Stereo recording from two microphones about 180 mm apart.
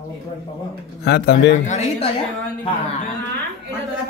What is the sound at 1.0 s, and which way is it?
Speech, 70° left (ahead or behind).